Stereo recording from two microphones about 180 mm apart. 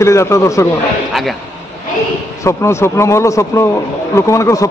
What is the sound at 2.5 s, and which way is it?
A man's voice, 15° left (ahead or behind).